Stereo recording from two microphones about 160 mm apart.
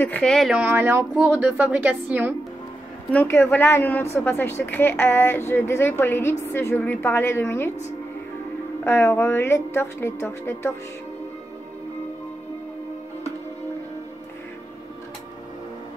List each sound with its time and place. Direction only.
0.0 s a woman's voice: 5° left (ahead or behind); by 2.3 s 10° right (ahead or behind)
3.1 s a woman's voice: 15° left (ahead or behind)
8.8 s a woman's voice: 15° left (ahead or behind)